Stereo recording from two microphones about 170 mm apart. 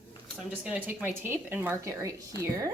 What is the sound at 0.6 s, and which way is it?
Speech, 10° right (ahead or behind).